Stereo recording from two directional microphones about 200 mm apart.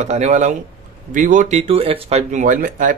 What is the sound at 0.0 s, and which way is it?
Speech, 35° right (ahead or behind).